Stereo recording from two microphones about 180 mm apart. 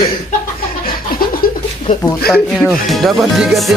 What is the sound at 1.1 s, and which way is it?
Chuckle, 55° left (ahead or behind).